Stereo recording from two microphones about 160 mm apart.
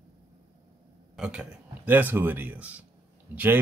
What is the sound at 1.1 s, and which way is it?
Speech, 5° right (ahead or behind).